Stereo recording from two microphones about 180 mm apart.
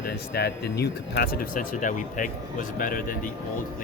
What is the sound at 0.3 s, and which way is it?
Speech, 65° left (ahead or behind).